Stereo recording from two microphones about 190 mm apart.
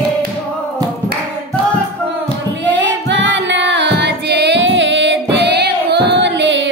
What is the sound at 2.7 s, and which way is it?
Music, 70° right (ahead or behind).